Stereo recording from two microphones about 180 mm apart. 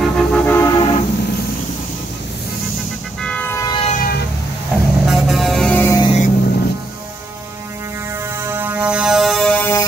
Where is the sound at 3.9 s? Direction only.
55° left (ahead or behind).